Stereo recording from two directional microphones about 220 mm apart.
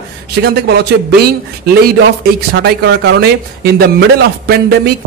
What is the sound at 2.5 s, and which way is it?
A man's voice, 50° right (ahead or behind).